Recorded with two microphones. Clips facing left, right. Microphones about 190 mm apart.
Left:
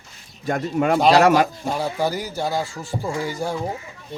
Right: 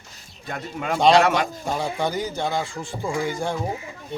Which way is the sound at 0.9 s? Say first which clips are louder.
Left 1 dB; 5° left (ahead or behind).